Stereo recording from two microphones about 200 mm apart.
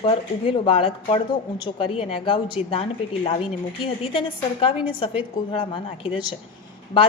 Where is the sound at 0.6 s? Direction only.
25° left (ahead or behind).